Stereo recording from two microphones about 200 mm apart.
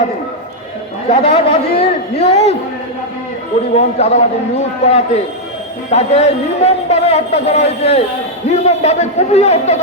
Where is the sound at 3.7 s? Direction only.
30° left (ahead or behind).